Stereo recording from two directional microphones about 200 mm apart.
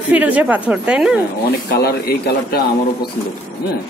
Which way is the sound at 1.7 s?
55° left (ahead or behind).